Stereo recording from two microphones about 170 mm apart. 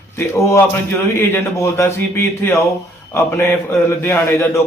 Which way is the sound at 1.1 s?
15° left (ahead or behind).